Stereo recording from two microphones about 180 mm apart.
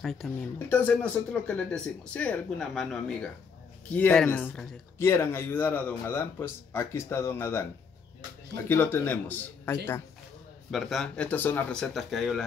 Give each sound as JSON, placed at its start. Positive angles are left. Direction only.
{"t": 0.0, "sound": "speech", "side_deg": 0}
{"t": 8.6, "sound": "speech", "side_deg": 10}